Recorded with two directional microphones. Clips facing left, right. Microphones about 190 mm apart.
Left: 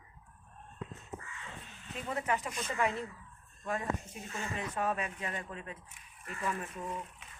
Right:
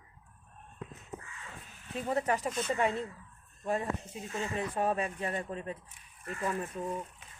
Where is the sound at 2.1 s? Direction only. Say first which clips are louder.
Right 4 dB; 35° right (ahead or behind).